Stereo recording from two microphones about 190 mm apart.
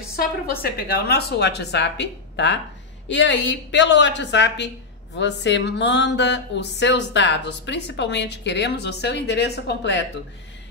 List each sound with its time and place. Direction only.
0.1 s speech: 55° left (ahead or behind)